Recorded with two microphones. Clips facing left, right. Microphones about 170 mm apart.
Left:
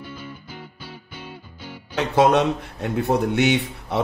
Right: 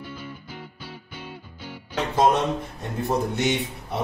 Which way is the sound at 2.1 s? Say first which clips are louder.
Left 4 dB; 70° left (ahead or behind).